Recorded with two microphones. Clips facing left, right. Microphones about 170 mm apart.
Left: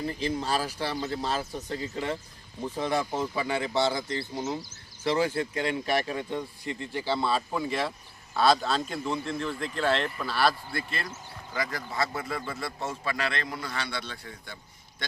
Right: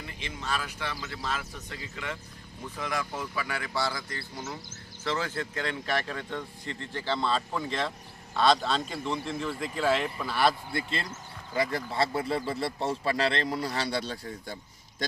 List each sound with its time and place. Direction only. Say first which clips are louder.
0.0 s speech: left 9 dB; 35° left (ahead or behind)
5.0 s a man's voice: left 5 dB; 15° left (ahead or behind); by 15.0 s 40° right (ahead or behind)